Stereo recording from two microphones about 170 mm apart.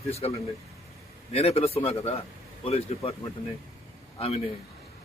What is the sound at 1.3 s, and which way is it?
A man's voice, 35° left (ahead or behind).